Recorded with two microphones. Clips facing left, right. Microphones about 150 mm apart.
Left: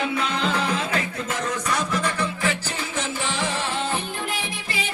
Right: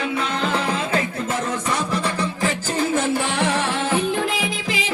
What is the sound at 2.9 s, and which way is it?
Music, 65° right (ahead or behind).